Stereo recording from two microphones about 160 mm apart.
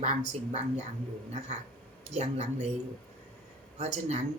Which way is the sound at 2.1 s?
45° right (ahead or behind).